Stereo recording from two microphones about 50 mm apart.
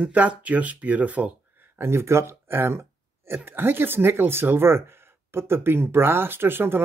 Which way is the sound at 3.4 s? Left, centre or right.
Right.